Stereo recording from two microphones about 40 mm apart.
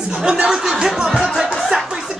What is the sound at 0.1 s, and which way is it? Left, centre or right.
Speech, right.